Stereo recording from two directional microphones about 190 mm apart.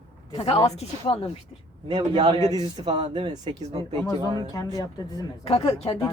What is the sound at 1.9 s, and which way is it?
Speech, 25° right (ahead or behind).